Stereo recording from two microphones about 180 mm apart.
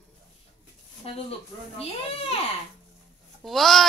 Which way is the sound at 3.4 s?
Centre (ahead or behind).